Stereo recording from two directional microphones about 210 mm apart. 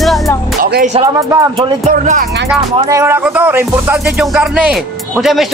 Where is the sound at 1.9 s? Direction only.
45° right (ahead or behind).